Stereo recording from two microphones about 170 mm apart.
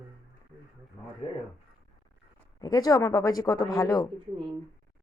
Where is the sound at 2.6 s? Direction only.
20° left (ahead or behind).